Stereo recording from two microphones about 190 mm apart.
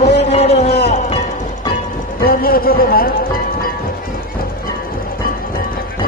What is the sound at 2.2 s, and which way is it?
Speech, 50° left (ahead or behind).